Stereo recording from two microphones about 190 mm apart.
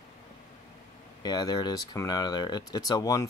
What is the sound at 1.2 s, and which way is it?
Speech, 20° left (ahead or behind).